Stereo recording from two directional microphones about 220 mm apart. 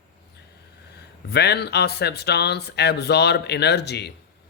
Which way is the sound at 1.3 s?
50° left (ahead or behind).